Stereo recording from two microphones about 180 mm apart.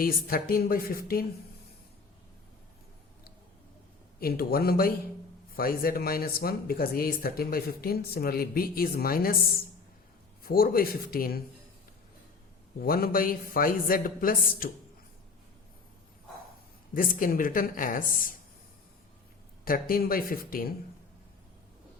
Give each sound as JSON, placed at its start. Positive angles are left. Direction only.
{"t": 0.0, "sound": "speech", "side_deg": 55}
{"t": 4.2, "sound": "speech", "side_deg": 55}
{"t": 12.8, "sound": "a man's voice", "side_deg": 55}
{"t": 16.9, "sound": "a man's voice", "side_deg": 50}
{"t": 19.6, "sound": "speech", "side_deg": 55}